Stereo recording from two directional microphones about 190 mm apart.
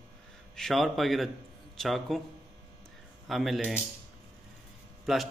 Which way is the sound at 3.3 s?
Centre (ahead or behind).